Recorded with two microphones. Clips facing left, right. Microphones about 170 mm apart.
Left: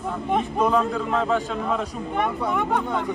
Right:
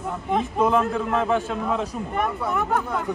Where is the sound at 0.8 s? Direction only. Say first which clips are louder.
Right 1 dB; 5° right (ahead or behind).